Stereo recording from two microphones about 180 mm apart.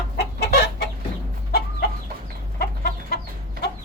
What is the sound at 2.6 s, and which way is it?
Chicken, 60° left (ahead or behind).